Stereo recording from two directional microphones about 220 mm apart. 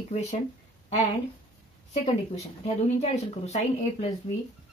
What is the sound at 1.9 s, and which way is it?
A woman's voice, 30° left (ahead or behind).